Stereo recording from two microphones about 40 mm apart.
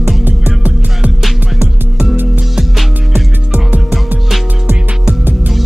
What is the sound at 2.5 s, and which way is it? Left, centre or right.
Music, centre.